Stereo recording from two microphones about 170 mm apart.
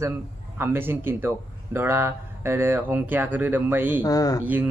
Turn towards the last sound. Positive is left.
turn(degrees=20)  # may be behind; listen again after turning